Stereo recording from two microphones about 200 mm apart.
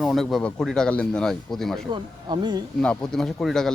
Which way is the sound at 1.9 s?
20° right (ahead or behind).